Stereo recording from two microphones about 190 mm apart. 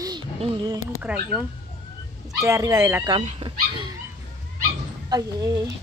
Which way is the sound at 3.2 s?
35° right (ahead or behind).